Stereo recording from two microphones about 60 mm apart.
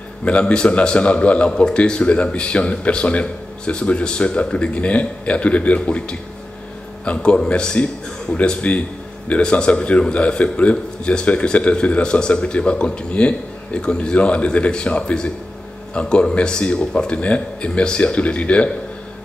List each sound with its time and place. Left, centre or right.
0.2 s a man's voice: centre